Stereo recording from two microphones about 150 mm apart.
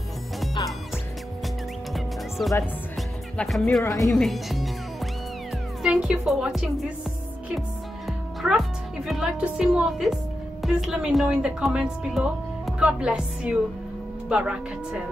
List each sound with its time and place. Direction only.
2.0 s music: centre (ahead or behind)
3.8 s speech: 20° left (ahead or behind)
4.1 s speech: centre (ahead or behind)
5.8 s a woman's voice: 5° right (ahead or behind)
8.4 s a woman's voice: centre (ahead or behind)